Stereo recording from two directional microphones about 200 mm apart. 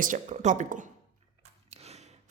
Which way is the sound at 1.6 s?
30° right (ahead or behind).